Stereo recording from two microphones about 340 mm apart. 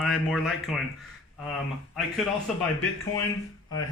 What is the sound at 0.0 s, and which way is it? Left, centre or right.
Speech, centre.